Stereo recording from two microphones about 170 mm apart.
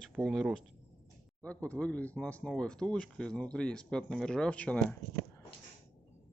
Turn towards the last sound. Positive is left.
turn(degrees=5)  # may be behind; listen again after turning